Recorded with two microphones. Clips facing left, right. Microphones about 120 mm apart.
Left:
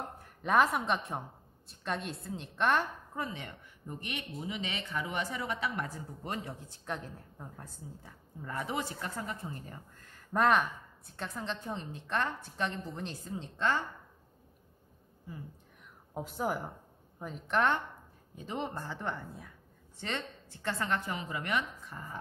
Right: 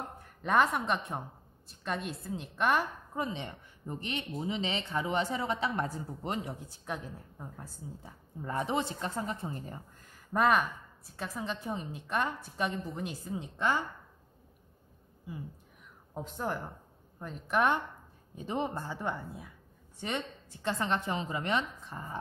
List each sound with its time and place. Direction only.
0.2 s a woman's voice: centre (ahead or behind)
3.2 s speech: 20° right (ahead or behind)
6.9 s a woman's voice: 5° right (ahead or behind)
8.0 s speech: 25° right (ahead or behind)
10.1 s a woman's voice: centre (ahead or behind)
16.2 s a woman's voice: 10° left (ahead or behind); by 22.2 s 25° right (ahead or behind)